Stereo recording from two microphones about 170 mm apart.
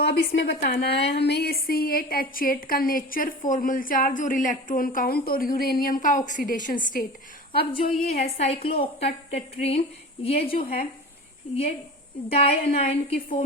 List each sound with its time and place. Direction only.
0.0 s a woman's voice: 80° left; by 0.9 s 65° left (ahead or behind)
1.0 s a woman's voice: 80° left; by 7.0 s 50° left (ahead or behind)
7.6 s a woman's voice: 35° left (ahead or behind)
12.3 s a woman's voice: 35° left (ahead or behind)
13.1 s a woman's voice: 55° left (ahead or behind)